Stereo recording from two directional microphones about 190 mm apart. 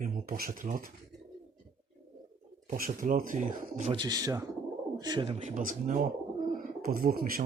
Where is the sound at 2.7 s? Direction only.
45° right (ahead or behind).